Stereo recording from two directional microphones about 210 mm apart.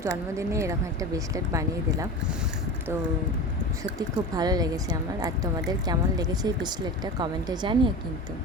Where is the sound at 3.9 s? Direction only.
20° right (ahead or behind).